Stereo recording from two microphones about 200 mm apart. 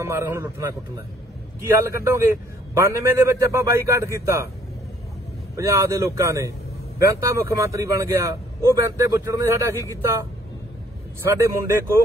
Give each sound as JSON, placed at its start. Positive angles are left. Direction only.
{"t": 0.0, "sound": "a man's voice", "side_deg": -15}
{"t": 1.8, "sound": "a man's voice", "side_deg": -15}
{"t": 5.6, "sound": "a man's voice", "side_deg": -15}
{"t": 11.2, "sound": "a man's voice", "side_deg": -15}